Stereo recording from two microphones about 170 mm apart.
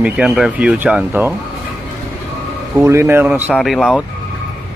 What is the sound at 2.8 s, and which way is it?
Speech, 15° right (ahead or behind).